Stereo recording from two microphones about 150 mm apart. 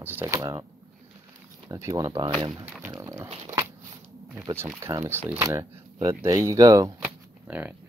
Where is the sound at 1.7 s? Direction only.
25° right (ahead or behind).